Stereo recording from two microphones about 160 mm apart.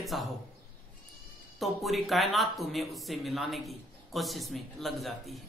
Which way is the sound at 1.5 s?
Centre (ahead or behind).